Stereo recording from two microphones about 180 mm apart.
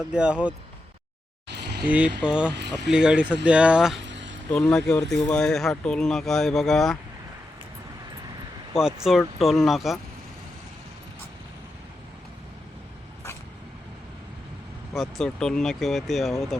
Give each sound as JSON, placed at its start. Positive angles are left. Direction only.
{"t": 0.0, "sound": "speech", "side_deg": -5}
{"t": 1.5, "sound": "a sound", "side_deg": -70}
{"t": 1.9, "sound": "speech", "side_deg": -5}
{"t": 2.6, "sound": "speech", "side_deg": -70}
{"t": 2.9, "sound": "speech", "side_deg": -5}
{"t": 4.0, "sound": "a sound", "side_deg": -90}
{"t": 4.5, "sound": "speech", "side_deg": 5}
{"t": 9.0, "sound": "speech", "side_deg": 0}
{"t": 14.9, "sound": "speech", "side_deg": 5}